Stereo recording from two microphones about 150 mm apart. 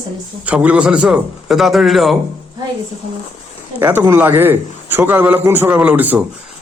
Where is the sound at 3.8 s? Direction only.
15° right (ahead or behind).